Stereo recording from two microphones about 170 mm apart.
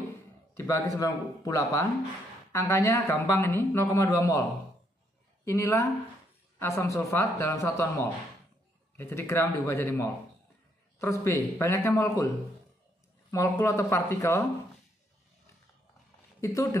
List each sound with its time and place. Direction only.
0.6 s a man's voice: 15° left (ahead or behind)
13.3 s speech: 15° left (ahead or behind)
16.3 s speech: 20° left (ahead or behind)